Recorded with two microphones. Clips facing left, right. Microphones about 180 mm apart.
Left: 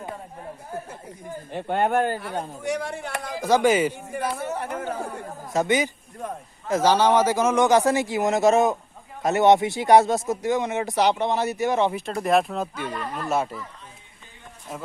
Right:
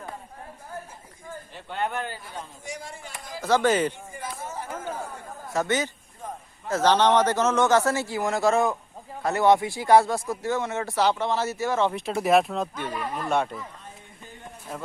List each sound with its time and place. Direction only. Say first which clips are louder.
1.5 s speech: left 8 dB; 55° left (ahead or behind)
3.3 s speech: left 2 dB; 15° left (ahead or behind)
4.1 s speech: left 8 dB; 65° left (ahead or behind)
5.5 s speech: left 3 dB; 15° left (ahead or behind)
6.2 s a sound: left 4 dB; 70° left (ahead or behind)
6.7 s speech: left 1 dB; 10° left (ahead or behind)
11.9 s speech: even; 5° right (ahead or behind)
12.9 s speech: even; 10° right (ahead or behind)
13.2 s speech: even; 5° left (ahead or behind)